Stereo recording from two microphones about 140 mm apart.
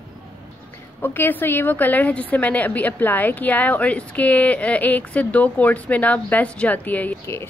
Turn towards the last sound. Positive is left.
turn(degrees=15)  # may be behind; listen again after turning